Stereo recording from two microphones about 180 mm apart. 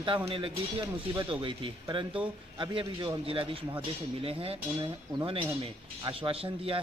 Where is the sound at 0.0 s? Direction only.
30° right (ahead or behind).